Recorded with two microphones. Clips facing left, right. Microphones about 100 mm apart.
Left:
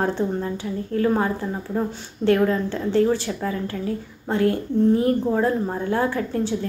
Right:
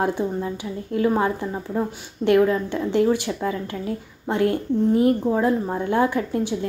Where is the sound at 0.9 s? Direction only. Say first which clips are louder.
Right 1 dB; 20° right (ahead or behind).